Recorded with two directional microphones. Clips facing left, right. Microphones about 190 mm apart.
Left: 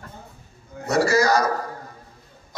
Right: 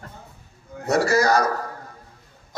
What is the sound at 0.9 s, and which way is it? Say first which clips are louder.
Speech: even; 55° right (ahead or behind).